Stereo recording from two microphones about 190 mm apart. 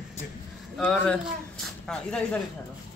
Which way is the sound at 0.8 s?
5° left (ahead or behind).